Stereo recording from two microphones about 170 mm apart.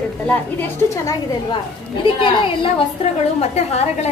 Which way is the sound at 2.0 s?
30° left (ahead or behind).